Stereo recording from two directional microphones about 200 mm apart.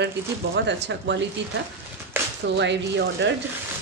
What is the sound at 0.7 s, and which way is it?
Speech, 60° right (ahead or behind).